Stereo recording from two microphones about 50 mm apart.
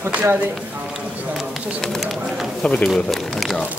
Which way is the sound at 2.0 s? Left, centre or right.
Centre.